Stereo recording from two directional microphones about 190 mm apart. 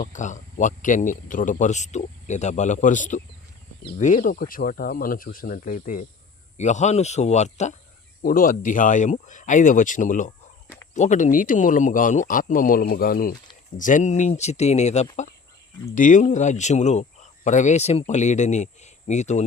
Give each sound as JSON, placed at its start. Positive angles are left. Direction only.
{"t": 0.0, "sound": "speech", "side_deg": 40}